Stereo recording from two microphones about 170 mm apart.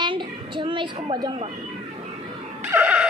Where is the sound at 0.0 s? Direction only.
30° right (ahead or behind).